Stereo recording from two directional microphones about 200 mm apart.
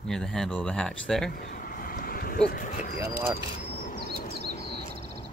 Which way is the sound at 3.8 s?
45° left (ahead or behind).